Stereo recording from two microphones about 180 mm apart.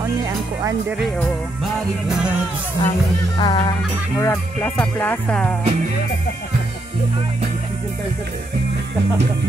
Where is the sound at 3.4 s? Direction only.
20° left (ahead or behind).